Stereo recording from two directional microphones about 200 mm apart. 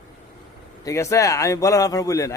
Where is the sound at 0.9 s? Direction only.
15° left (ahead or behind).